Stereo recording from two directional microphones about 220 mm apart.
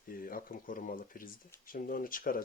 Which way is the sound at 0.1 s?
40° left (ahead or behind).